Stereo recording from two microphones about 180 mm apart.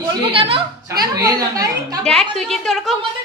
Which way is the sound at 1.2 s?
20° right (ahead or behind).